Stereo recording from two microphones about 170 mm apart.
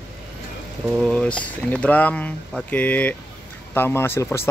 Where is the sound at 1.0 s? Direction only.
Centre (ahead or behind).